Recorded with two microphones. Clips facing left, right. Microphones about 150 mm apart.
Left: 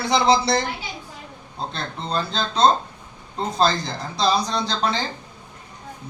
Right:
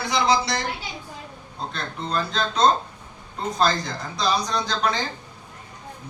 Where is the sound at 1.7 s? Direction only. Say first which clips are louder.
Even; 30° left (ahead or behind).